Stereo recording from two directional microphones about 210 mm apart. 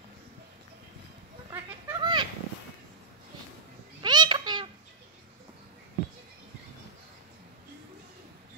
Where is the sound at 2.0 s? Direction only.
20° right (ahead or behind).